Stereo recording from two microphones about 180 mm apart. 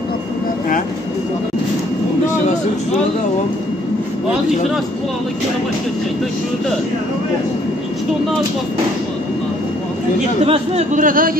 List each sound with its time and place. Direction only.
10.4 s speech: 35° right (ahead or behind)